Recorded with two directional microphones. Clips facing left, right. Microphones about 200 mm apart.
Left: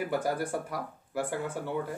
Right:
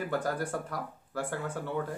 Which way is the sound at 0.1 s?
10° left (ahead or behind).